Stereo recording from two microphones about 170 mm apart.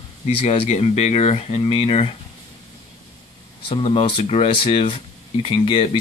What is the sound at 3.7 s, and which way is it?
Speech, 30° left (ahead or behind).